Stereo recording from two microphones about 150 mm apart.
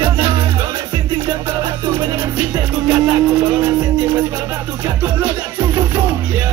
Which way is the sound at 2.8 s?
20° right (ahead or behind).